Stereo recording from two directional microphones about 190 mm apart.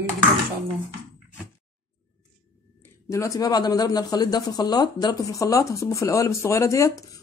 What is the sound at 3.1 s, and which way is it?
Speech, 15° left (ahead or behind).